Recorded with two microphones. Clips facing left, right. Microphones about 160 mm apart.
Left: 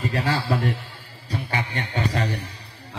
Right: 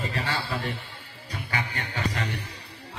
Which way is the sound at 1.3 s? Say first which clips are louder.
Left 4 dB; 30° left (ahead or behind).